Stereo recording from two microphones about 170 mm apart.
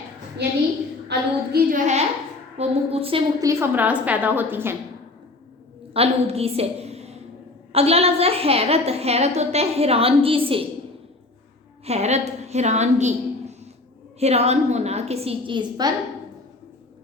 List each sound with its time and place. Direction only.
0.4 s a woman's voice: 75° right (ahead or behind)
1.5 s a woman's voice: 45° right (ahead or behind)
2.6 s a woman's voice: 35° right (ahead or behind)
3.4 s a woman's voice: 15° right (ahead or behind)
5.9 s a woman's voice: 35° right (ahead or behind)
11.9 s a woman's voice: 40° right (ahead or behind)